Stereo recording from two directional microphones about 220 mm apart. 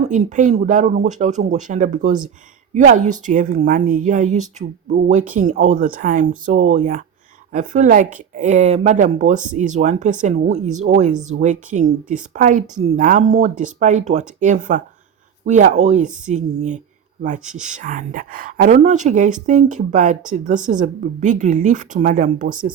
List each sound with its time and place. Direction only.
0.0 s speech: 35° right (ahead or behind)